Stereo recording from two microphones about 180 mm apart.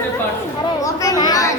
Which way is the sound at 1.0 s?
20° left (ahead or behind).